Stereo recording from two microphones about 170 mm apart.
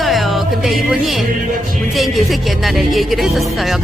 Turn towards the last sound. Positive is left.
turn(degrees=0)  # may be behind; listen again after turning